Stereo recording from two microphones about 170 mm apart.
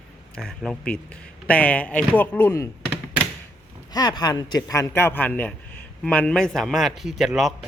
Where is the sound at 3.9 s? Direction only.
25° left (ahead or behind).